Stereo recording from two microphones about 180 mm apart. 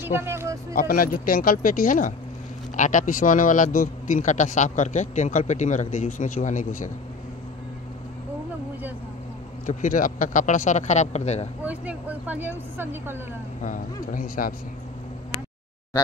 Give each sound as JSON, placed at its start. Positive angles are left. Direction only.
{"t": 0.0, "sound": "speech", "side_deg": -10}
{"t": 0.7, "sound": "a man's voice", "side_deg": 55}
{"t": 9.7, "sound": "a man's voice", "side_deg": 45}
{"t": 11.6, "sound": "speech", "side_deg": -10}
{"t": 13.6, "sound": "a man's voice", "side_deg": 50}